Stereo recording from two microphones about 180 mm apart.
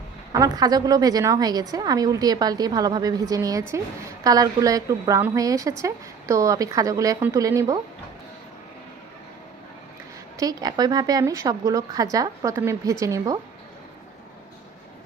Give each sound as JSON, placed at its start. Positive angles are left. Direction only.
{"t": 0.3, "sound": "speech", "side_deg": -20}
{"t": 10.3, "sound": "a woman's voice", "side_deg": -20}